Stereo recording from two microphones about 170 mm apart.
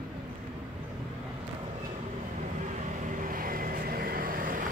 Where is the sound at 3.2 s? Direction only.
55° right (ahead or behind).